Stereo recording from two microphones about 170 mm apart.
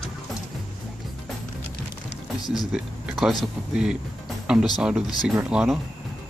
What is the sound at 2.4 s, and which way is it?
Speech, 25° left (ahead or behind).